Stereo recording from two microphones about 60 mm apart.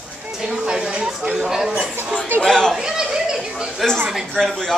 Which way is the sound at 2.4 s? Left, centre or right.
Centre.